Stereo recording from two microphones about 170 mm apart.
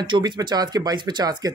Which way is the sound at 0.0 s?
25° right (ahead or behind).